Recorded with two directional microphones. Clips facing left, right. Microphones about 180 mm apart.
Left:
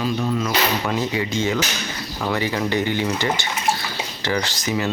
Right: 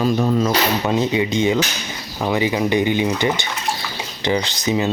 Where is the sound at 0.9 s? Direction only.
20° right (ahead or behind).